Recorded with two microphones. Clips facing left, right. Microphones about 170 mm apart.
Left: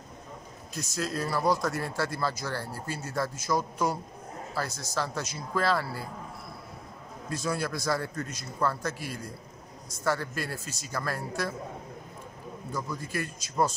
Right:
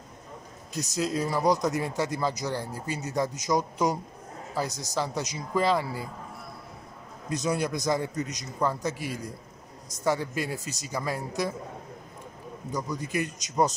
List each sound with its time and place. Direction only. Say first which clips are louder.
0.9 s speech: right 3 dB; 15° right (ahead or behind)
7.2 s speech: right 3 dB; 15° right (ahead or behind)
12.7 s speech: right 4 dB; 15° right (ahead or behind)